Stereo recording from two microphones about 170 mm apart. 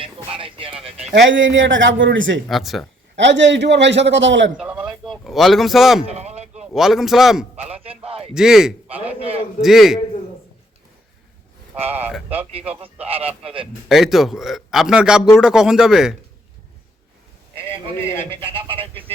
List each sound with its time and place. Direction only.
0.0 s a sound: 30° right (ahead or behind)
1.1 s a man's voice: 90° right
2.5 s a man's voice: centre (ahead or behind)
3.2 s a man's voice: 90° right
4.5 s a sound: 5° right (ahead or behind)
6.1 s a sound: 40° right (ahead or behind)
6.7 s a man's voice: centre (ahead or behind)
7.5 s speech: 35° right (ahead or behind)
8.3 s a man's voice: 5° right (ahead or behind)
11.9 s speech: 10° right (ahead or behind)
13.1 s speech: 35° right (ahead or behind)
13.8 s a man's voice: centre (ahead or behind)
17.5 s a sound: 15° left (ahead or behind)
18.3 s speech: 30° right (ahead or behind)